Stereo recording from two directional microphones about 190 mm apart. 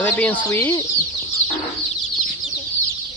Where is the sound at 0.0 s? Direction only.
10° left (ahead or behind).